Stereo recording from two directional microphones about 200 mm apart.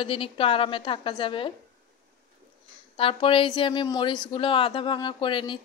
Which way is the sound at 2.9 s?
25° left (ahead or behind).